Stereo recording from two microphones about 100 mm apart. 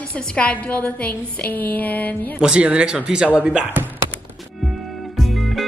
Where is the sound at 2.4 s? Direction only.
10° right (ahead or behind).